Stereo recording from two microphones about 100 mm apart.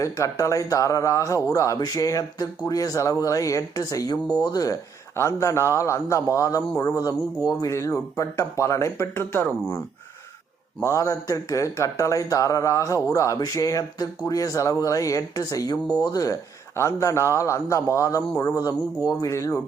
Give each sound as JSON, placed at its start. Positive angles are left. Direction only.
{"t": 0.0, "sound": "a man's voice", "side_deg": 30}
{"t": 5.1, "sound": "a man's voice", "side_deg": 30}
{"t": 10.8, "sound": "a man's voice", "side_deg": 35}